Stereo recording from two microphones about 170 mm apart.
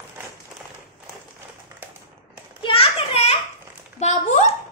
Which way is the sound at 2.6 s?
35° left (ahead or behind).